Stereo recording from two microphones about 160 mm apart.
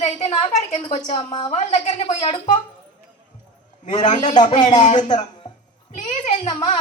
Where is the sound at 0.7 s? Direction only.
30° left (ahead or behind).